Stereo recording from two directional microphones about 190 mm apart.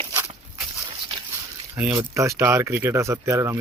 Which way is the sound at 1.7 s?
15° right (ahead or behind).